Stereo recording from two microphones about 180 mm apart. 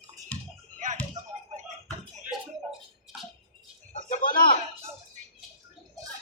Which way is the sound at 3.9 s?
50° left (ahead or behind).